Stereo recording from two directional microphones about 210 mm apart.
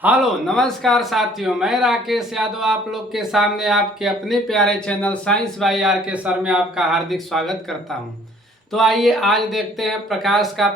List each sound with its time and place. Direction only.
0.0 s speech: 5° right (ahead or behind)
8.7 s speech: centre (ahead or behind)